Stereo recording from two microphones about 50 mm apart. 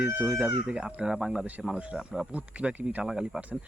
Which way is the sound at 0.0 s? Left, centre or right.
Right.